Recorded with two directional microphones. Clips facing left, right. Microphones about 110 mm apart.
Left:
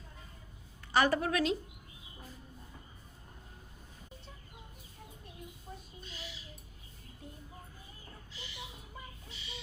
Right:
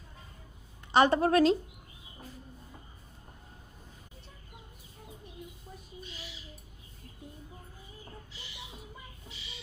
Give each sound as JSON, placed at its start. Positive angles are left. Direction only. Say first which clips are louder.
{"t": 0.9, "sound": "a woman's voice", "louder": "right 5 dB", "side_deg": -25}
{"t": 1.3, "sound": "speech", "louder": "right 8 dB", "side_deg": -40}